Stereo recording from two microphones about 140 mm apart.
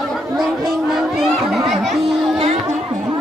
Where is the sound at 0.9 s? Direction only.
Centre (ahead or behind).